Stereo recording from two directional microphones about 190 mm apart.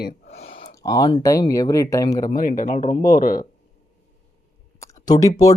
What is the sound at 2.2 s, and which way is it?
Speech, 45° left (ahead or behind).